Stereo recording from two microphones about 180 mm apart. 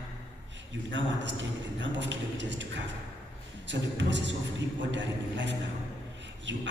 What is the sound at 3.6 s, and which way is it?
A man's voice, 80° right.